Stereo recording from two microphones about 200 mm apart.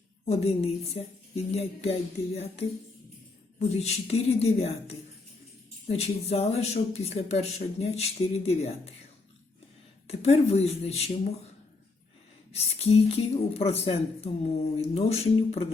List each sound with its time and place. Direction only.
0.3 s a woman's voice: 30° left (ahead or behind)
10.1 s a woman's voice: 30° left (ahead or behind)
12.5 s a woman's voice: 30° left (ahead or behind)